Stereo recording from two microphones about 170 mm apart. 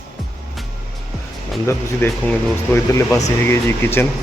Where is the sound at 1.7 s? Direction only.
10° left (ahead or behind).